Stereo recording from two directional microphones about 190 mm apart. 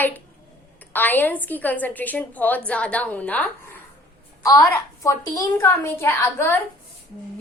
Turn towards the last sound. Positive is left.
turn(degrees=10)  # may be behind; listen again after turning